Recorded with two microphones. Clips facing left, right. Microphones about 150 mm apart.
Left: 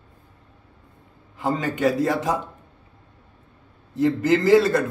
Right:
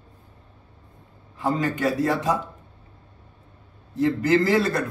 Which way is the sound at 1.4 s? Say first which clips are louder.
Left 1 dB; 15° left (ahead or behind).